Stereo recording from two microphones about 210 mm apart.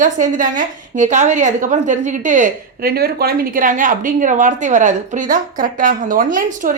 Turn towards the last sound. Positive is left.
turn(degrees=-40)  # may be behind; listen again after turning